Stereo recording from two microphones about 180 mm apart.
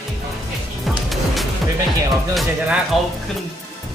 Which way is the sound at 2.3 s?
Centre (ahead or behind).